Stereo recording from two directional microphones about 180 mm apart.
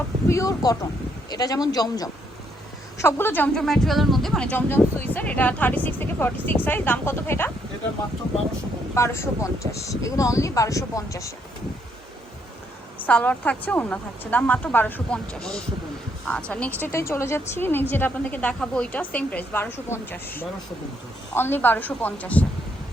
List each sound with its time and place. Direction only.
0.3 s speech: 20° left (ahead or behind)
9.0 s speech: 15° left (ahead or behind)
13.0 s speech: 10° left (ahead or behind)